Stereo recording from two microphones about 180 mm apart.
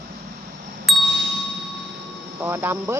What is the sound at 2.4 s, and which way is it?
Speech, 10° right (ahead or behind).